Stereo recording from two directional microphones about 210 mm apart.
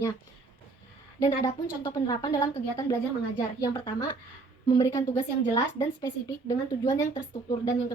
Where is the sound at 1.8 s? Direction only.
15° left (ahead or behind).